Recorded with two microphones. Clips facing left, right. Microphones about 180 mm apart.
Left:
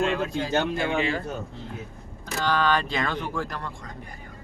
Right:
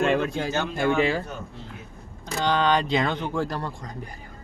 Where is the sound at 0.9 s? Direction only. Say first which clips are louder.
Right 4 dB; 35° right (ahead or behind).